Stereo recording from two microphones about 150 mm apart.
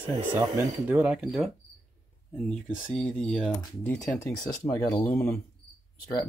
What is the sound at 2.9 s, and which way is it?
Speech, 5° left (ahead or behind).